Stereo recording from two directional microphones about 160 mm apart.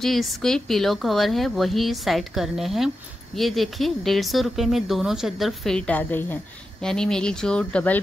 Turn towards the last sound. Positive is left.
turn(degrees=10)  # may be behind; listen again after turning